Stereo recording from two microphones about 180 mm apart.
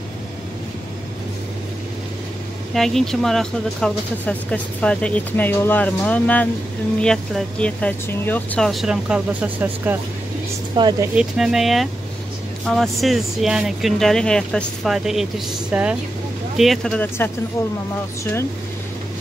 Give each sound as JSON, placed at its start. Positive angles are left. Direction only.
{"t": 2.7, "sound": "speech", "side_deg": 0}
{"t": 10.8, "sound": "speech", "side_deg": -25}
{"t": 11.1, "sound": "speech", "side_deg": -5}